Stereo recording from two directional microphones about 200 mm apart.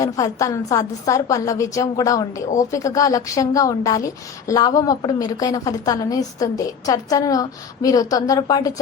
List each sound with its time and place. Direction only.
0.0 s a woman's voice: 15° left (ahead or behind)